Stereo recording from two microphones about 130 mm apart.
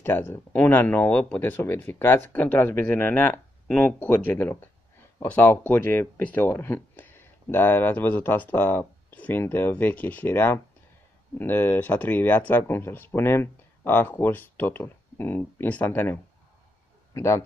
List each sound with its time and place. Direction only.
0.0 s speech: 15° left (ahead or behind)